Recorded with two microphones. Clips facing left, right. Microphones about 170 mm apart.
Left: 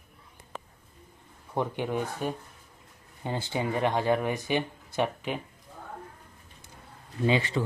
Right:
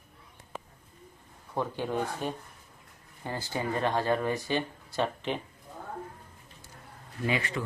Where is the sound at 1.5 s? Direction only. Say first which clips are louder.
Left 2 dB; 15° left (ahead or behind).